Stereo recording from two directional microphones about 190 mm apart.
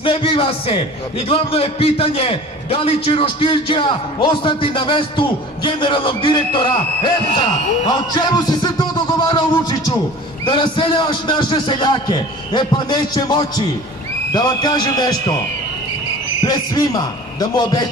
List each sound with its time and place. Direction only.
0.0 s a man's voice: 30° left (ahead or behind)
16.4 s a man's voice: 20° left (ahead or behind)